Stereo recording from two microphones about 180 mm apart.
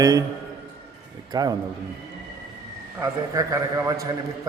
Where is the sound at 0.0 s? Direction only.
20° right (ahead or behind).